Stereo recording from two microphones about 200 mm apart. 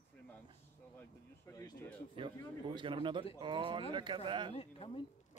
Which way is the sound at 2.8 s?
25° right (ahead or behind).